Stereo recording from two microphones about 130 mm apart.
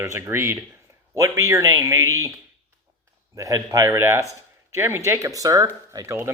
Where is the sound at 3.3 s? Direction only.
25° right (ahead or behind).